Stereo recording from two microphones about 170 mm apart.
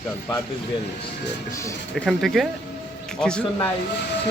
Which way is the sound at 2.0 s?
Centre (ahead or behind).